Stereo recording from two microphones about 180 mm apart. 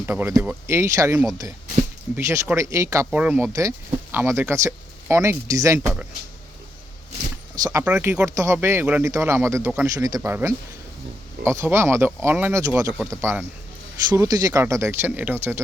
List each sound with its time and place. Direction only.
0.0 s speech: 10° right (ahead or behind)
7.6 s speech: 15° right (ahead or behind)